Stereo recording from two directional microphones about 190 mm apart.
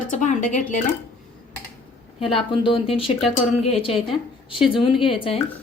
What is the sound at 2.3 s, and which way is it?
A woman's voice, 25° left (ahead or behind).